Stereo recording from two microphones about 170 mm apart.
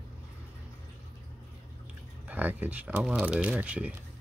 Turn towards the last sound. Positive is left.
turn(degrees=-5)  # may be behind; listen again after turning